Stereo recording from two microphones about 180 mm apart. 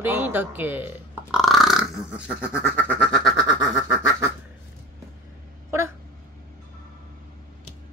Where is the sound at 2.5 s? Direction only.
10° left (ahead or behind).